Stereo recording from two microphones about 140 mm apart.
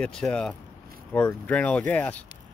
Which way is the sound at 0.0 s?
5° left (ahead or behind).